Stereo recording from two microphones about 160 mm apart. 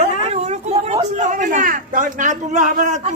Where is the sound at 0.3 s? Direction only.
45° right (ahead or behind).